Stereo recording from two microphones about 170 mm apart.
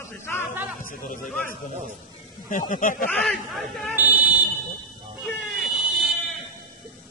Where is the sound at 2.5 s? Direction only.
50° left (ahead or behind).